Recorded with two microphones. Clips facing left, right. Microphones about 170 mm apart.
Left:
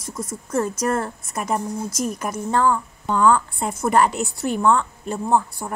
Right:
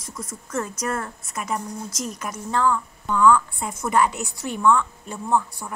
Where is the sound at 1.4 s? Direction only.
50° left (ahead or behind).